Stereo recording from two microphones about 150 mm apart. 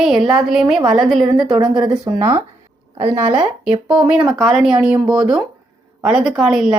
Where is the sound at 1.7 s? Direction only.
30° right (ahead or behind).